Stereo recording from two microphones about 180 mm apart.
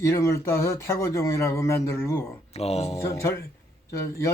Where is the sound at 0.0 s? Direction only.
15° left (ahead or behind).